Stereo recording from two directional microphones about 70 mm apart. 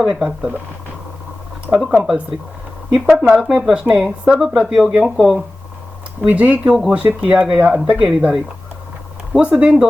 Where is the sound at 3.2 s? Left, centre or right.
Centre.